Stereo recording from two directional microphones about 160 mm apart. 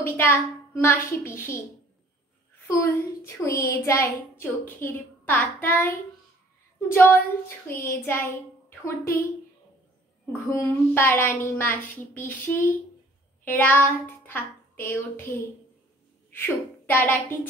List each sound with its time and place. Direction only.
0.0 s child singing: 15° left (ahead or behind)
2.7 s child singing: 15° left (ahead or behind)
10.5 s child singing: 15° left (ahead or behind)
13.4 s a sound: 10° left (ahead or behind)
16.3 s a child's voice: 10° left (ahead or behind)